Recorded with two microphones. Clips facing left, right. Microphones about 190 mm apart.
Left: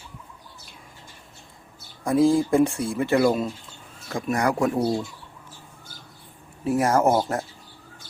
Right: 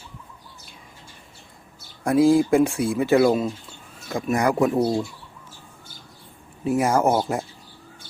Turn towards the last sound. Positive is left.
turn(degrees=0)  # may be behind; listen again after turning